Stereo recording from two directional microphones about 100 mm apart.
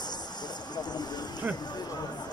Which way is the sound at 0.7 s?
45° left (ahead or behind).